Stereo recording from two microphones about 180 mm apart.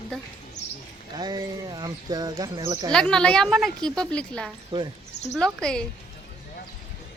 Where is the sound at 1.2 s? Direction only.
25° right (ahead or behind).